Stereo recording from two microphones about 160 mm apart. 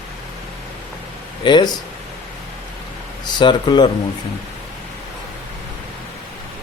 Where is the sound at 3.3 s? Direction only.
30° left (ahead or behind).